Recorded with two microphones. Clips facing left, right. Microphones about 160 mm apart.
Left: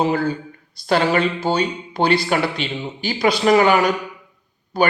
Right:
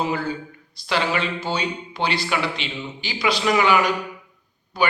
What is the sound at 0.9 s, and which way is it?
Speech, 45° left (ahead or behind).